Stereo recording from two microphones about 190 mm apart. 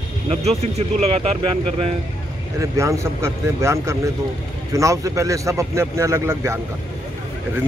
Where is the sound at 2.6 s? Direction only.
15° right (ahead or behind).